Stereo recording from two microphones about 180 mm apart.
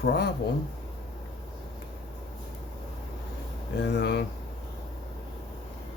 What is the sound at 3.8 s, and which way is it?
Speech, 70° left (ahead or behind).